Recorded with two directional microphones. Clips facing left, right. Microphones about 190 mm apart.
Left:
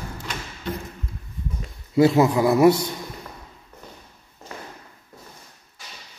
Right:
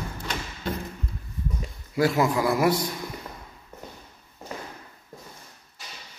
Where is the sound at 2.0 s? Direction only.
25° left (ahead or behind).